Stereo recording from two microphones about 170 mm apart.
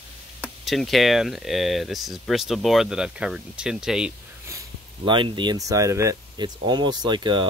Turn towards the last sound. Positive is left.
turn(degrees=-25)  # may be behind; listen again after turning